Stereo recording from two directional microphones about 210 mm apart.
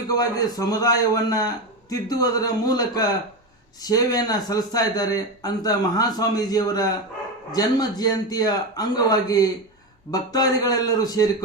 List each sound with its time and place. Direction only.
0.1 s a man's voice: 15° left (ahead or behind)